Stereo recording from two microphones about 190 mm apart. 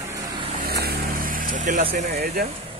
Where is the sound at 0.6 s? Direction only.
55° right (ahead or behind).